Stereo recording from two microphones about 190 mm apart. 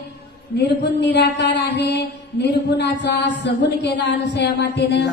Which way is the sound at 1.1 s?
65° left (ahead or behind).